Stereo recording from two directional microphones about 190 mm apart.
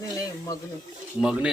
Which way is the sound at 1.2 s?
5° right (ahead or behind).